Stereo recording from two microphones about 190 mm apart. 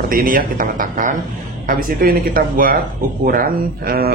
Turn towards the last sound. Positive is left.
turn(degrees=-50)  # may be behind; listen again after turning